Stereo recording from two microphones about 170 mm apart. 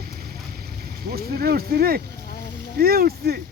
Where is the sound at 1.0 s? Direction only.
65° right (ahead or behind).